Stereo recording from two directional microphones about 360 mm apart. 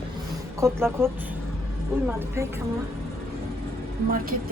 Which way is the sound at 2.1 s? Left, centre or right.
Centre.